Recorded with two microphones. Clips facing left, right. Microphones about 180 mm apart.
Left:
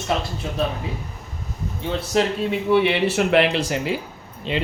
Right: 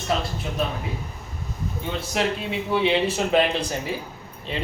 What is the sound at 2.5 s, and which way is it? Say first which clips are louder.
Speech: left 4 dB; 65° left (ahead or behind).